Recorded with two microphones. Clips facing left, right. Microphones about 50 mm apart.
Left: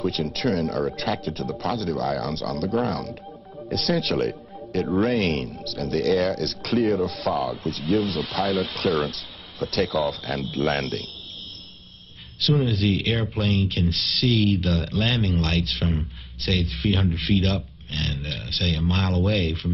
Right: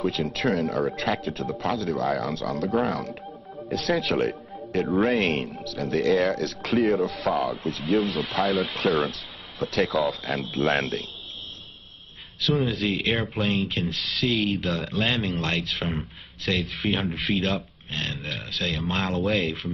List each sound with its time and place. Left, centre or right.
0.0 s speech: centre
3.7 s speech: centre
4.8 s speech: centre
5.1 s speech: centre
12.6 s speech: centre